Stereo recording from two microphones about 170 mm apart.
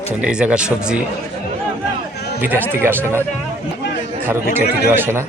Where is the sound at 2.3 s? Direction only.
10° right (ahead or behind).